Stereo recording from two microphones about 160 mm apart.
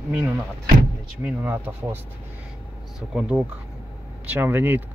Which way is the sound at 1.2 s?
15° right (ahead or behind).